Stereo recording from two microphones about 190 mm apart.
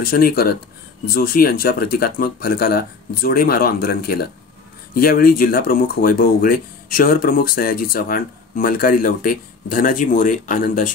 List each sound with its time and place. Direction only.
0.0 s speech: 50° left (ahead or behind)